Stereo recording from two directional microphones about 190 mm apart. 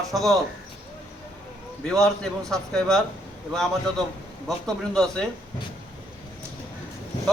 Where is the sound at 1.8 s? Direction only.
5° left (ahead or behind).